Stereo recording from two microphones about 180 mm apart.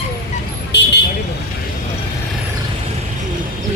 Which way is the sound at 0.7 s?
70° left (ahead or behind).